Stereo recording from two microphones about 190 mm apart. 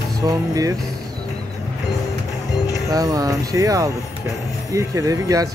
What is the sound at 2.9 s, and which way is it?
Speech, 20° right (ahead or behind).